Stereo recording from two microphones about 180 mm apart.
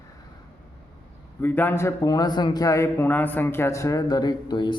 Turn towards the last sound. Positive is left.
turn(degrees=25)  # may be behind; listen again after turning